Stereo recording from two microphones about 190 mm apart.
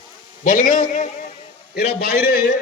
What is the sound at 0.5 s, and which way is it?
Speech, 40° left (ahead or behind).